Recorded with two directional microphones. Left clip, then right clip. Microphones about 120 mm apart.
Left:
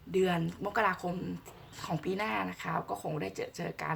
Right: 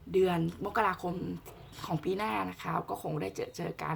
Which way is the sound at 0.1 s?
20° right (ahead or behind).